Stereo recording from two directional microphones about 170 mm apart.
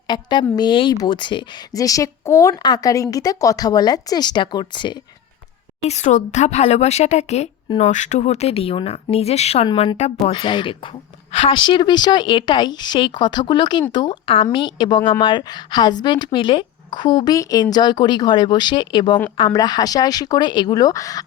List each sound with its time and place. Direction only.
0.1 s a woman's voice: 25° left (ahead or behind)
5.8 s a woman's voice: 40° left (ahead or behind); by 21.2 s 20° left (ahead or behind)